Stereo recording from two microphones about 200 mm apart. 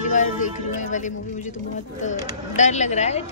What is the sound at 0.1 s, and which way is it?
Speech, 40° left (ahead or behind).